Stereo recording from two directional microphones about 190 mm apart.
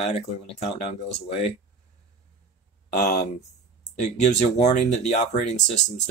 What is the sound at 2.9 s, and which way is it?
Speech, 40° left (ahead or behind).